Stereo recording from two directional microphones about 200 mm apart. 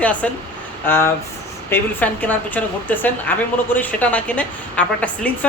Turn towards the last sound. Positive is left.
turn(degrees=5)  # may be behind; listen again after turning